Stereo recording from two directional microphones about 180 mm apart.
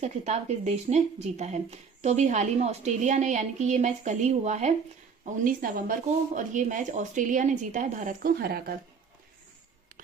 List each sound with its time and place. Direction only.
0.0 s a woman's voice: 40° right (ahead or behind); by 8.7 s 60° right (ahead or behind)